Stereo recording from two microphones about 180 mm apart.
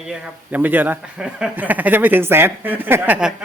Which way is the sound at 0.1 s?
10° right (ahead or behind).